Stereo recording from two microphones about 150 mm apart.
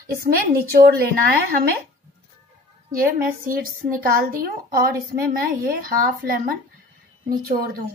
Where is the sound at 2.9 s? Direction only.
70° right (ahead or behind).